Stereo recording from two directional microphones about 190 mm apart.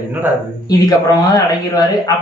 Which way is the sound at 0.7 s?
20° left (ahead or behind).